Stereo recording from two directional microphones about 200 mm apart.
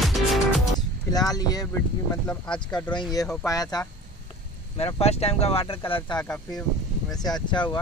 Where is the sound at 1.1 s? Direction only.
20° left (ahead or behind).